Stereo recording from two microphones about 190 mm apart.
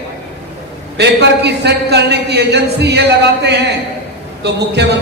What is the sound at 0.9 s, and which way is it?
A man's voice, 60° right (ahead or behind).